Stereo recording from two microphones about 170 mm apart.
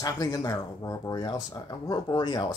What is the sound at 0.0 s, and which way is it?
Speech, 20° left (ahead or behind).